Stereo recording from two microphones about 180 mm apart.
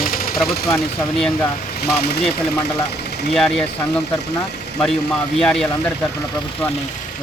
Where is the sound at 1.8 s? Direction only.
60° left (ahead or behind).